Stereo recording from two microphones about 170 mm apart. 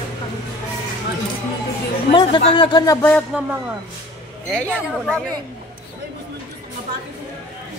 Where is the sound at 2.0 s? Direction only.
30° left (ahead or behind).